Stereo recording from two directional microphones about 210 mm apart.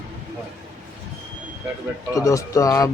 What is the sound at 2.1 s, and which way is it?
Speech, 15° left (ahead or behind).